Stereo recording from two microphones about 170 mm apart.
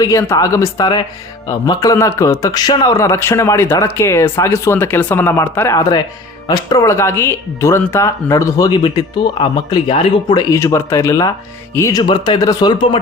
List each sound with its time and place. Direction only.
0.0 s a man's voice: 20° left (ahead or behind)